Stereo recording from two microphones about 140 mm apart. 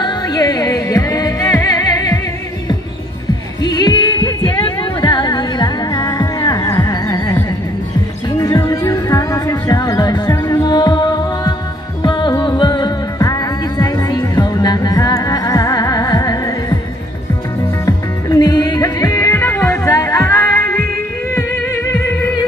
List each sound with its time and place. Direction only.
0.0 s music: 30° left (ahead or behind)
3.6 s music: 30° left (ahead or behind)
17.8 s music: 25° left (ahead or behind)